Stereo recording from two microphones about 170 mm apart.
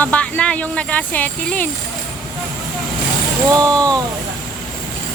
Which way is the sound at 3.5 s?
20° right (ahead or behind).